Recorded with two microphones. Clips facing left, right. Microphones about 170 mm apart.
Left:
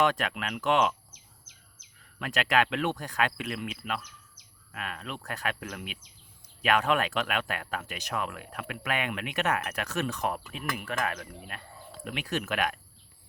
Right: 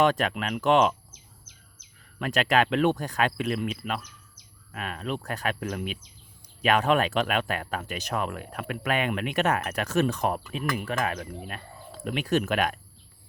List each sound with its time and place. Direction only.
0.2 s speech: 30° right (ahead or behind)
2.3 s speech: 25° right (ahead or behind)
3.0 s speech: 25° right (ahead or behind)
5.5 s speech: 40° right (ahead or behind)
6.6 s speech: 25° right (ahead or behind)